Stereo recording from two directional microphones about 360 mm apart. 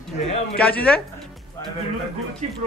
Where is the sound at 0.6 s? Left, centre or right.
Centre.